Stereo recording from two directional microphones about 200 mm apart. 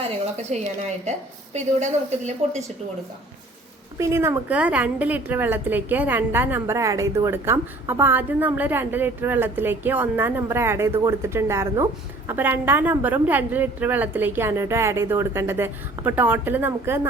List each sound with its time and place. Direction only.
0.5 s a woman's voice: 35° right (ahead or behind)
3.9 s a woman's voice: 15° right (ahead or behind)